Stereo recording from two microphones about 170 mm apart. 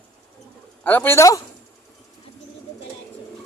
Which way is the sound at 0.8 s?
10° left (ahead or behind).